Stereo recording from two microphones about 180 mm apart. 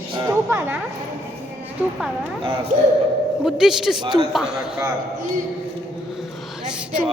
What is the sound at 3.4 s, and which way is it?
Speech, 5° right (ahead or behind).